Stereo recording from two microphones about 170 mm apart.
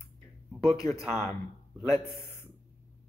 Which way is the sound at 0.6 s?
20° left (ahead or behind).